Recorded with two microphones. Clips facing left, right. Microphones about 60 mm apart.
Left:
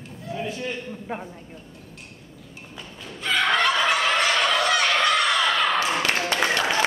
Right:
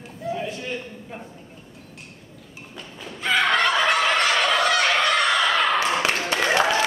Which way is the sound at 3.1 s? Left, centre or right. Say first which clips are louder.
Right 2 dB; centre.